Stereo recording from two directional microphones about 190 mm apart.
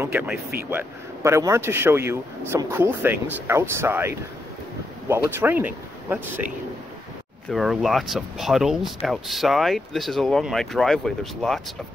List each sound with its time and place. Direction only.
0.1 s speech: 5° right (ahead or behind)
7.5 s speech: centre (ahead or behind)